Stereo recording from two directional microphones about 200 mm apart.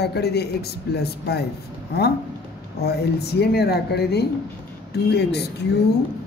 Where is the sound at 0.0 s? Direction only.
55° left (ahead or behind).